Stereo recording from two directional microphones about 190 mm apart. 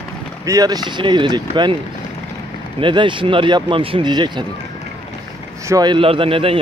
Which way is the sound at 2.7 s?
25° right (ahead or behind).